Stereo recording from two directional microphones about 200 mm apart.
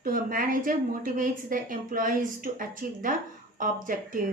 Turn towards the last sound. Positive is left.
turn(degrees=-45)  # may be behind; listen again after turning